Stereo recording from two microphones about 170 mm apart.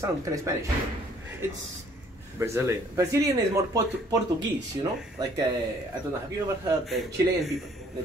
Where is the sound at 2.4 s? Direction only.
15° right (ahead or behind).